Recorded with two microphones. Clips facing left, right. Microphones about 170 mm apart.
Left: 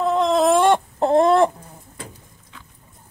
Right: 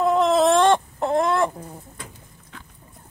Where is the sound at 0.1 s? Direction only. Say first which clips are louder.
Left 2 dB; 5° right (ahead or behind).